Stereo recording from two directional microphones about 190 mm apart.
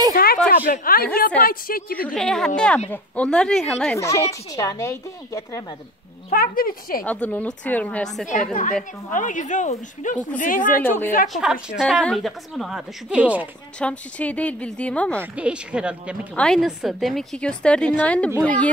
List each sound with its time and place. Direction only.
0.1 s a sound: 50° left (ahead or behind)
0.5 s a woman's voice: 50° left (ahead or behind)
2.0 s a woman's voice: 5° left (ahead or behind)
4.0 s speech: 15° left (ahead or behind)
6.3 s a woman's voice: 50° left (ahead or behind)
7.1 s speech: 10° left (ahead or behind)
9.1 s a woman's voice: 40° left (ahead or behind)
10.7 s speech: 10° left (ahead or behind)
11.2 s a woman's voice: centre (ahead or behind)
13.7 s speech: 5° left (ahead or behind)
15.1 s a woman's voice: 5° right (ahead or behind)